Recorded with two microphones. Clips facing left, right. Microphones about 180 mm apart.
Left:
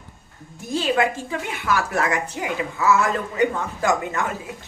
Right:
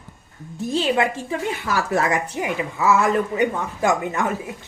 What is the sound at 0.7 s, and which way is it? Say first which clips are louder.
A woman's voice: even; 25° right (ahead or behind).